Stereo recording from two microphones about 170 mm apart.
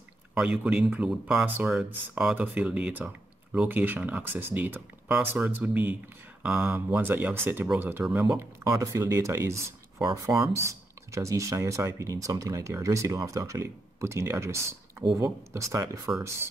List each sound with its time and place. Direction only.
0.3 s speech: 5° right (ahead or behind)